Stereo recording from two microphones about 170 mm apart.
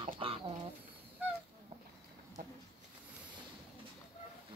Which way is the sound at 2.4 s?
60° right (ahead or behind).